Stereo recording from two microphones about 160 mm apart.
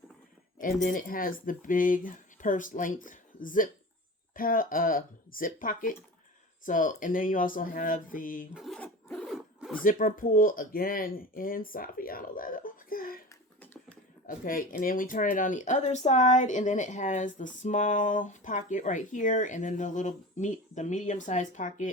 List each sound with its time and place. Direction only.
0.6 s speech: 55° left (ahead or behind)
8.5 s speech: centre (ahead or behind)
9.0 s zipper: centre (ahead or behind)
9.8 s speech: 60° left (ahead or behind)
14.3 s speech: 60° left (ahead or behind)